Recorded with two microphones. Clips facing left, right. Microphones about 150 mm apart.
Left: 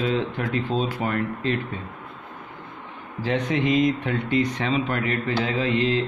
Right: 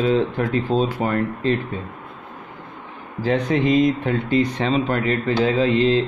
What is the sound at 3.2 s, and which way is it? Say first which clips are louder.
Speech: right 4 dB; 35° right (ahead or behind).